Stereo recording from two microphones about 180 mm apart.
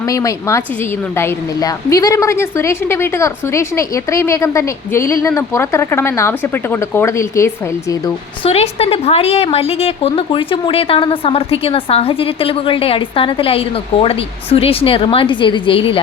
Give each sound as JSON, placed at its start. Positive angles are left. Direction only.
{"t": 0.0, "sound": "a woman's voice", "side_deg": 20}
{"t": 8.4, "sound": "a woman's voice", "side_deg": 35}